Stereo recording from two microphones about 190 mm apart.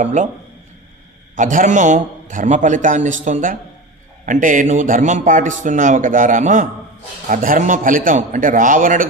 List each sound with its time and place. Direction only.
0.0 s a man's voice: 40° right (ahead or behind)
1.4 s a man's voice: 40° right (ahead or behind)